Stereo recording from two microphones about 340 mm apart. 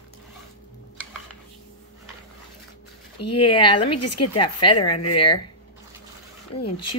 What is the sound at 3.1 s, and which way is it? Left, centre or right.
A woman's voice, left.